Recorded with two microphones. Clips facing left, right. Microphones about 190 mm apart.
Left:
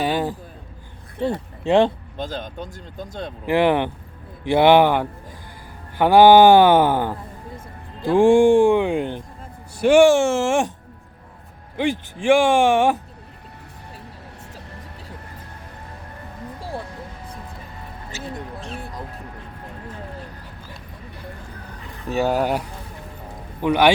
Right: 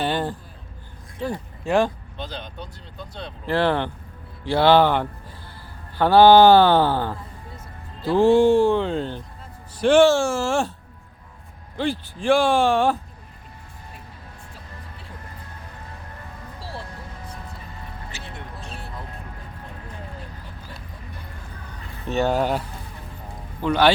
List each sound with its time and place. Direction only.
0.0 s a sound: 5° left (ahead or behind)
1.2 s speech: 25° left (ahead or behind)
2.1 s speech: 45° left (ahead or behind)
3.4 s speech: 15° left (ahead or behind)
11.8 s speech: 15° left (ahead or behind)
18.1 s a sound: 40° left (ahead or behind)
22.1 s speech: 10° left (ahead or behind)